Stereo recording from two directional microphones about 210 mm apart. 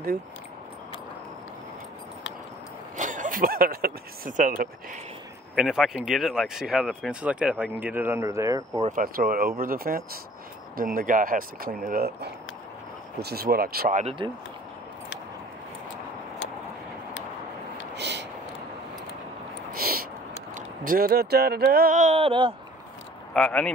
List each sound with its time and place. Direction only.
3.0 s speech: 35° right (ahead or behind)
5.6 s speech: centre (ahead or behind)
8.8 s speech: 40° right (ahead or behind)
17.9 s a sound: 55° right (ahead or behind)
19.7 s a sound: 45° right (ahead or behind)
20.5 s speech: 40° right (ahead or behind); by 22.5 s 25° right (ahead or behind)
23.3 s speech: 5° left (ahead or behind)